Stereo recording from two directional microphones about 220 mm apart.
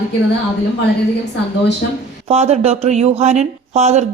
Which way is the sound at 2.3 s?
30° right (ahead or behind).